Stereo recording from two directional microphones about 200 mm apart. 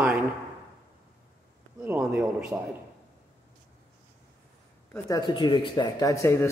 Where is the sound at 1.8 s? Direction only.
10° right (ahead or behind).